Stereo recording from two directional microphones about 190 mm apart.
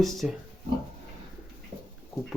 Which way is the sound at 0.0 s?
Centre (ahead or behind).